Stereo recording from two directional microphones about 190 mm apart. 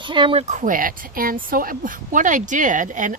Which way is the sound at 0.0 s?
25° right (ahead or behind).